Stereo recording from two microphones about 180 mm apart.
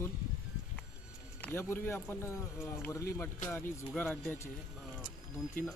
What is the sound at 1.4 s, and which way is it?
Speech, 10° left (ahead or behind).